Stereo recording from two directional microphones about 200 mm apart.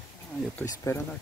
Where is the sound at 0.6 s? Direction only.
15° left (ahead or behind).